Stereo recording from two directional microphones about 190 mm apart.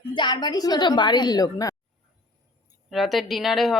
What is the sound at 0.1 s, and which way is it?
A woman's voice, 25° left (ahead or behind).